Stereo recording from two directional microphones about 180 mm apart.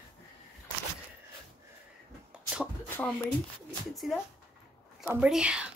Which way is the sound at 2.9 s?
10° left (ahead or behind).